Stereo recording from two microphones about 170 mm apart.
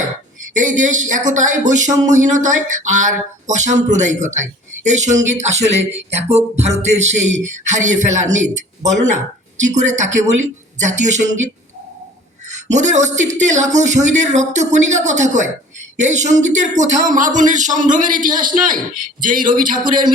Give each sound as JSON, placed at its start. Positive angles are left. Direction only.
{"t": 0.6, "sound": "speech", "side_deg": -45}